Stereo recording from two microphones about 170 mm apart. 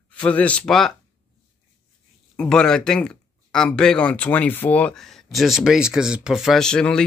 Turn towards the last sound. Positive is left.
turn(degrees=5)  # may be behind; listen again after turning